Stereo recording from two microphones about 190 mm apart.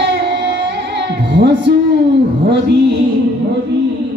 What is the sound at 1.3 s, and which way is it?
Music, 65° right (ahead or behind).